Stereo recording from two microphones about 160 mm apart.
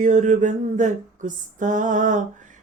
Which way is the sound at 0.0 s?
50° right (ahead or behind).